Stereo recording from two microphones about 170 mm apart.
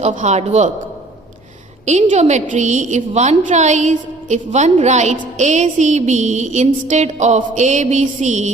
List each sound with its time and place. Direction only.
0.0 s a man's voice: 40° right (ahead or behind)
1.8 s a woman's voice: 45° right (ahead or behind)